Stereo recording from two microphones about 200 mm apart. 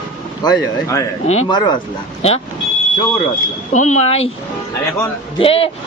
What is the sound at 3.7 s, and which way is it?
Speech, 35° left (ahead or behind).